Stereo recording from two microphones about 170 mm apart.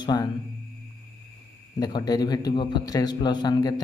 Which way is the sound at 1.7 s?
20° left (ahead or behind).